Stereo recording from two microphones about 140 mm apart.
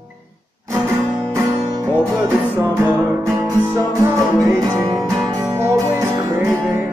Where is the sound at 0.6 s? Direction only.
20° right (ahead or behind).